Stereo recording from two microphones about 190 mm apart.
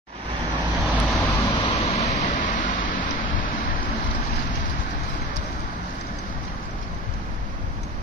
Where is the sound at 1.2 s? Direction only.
15° left (ahead or behind).